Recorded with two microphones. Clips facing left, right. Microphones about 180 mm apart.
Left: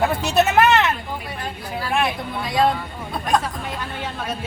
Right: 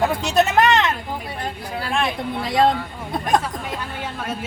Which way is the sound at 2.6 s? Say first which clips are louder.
Right 1 dB; 20° right (ahead or behind).